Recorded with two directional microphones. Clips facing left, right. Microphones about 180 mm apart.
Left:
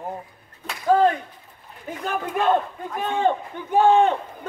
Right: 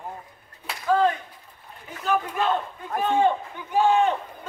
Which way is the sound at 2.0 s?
50° left (ahead or behind).